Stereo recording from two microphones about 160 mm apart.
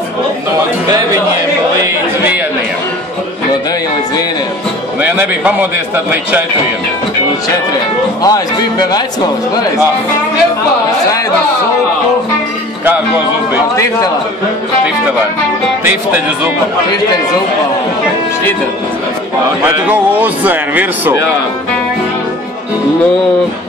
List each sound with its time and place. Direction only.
5.0 s speech: 10° right (ahead or behind)
8.2 s speech: 25° left (ahead or behind)
15.8 s speech: 15° right (ahead or behind)
19.6 s speech: 10° right (ahead or behind)